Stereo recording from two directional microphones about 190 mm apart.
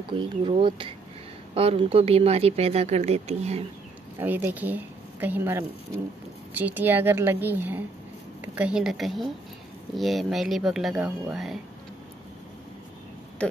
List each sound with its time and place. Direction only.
0.1 s speech: 25° right (ahead or behind)
4.2 s a woman's voice: 10° right (ahead or behind)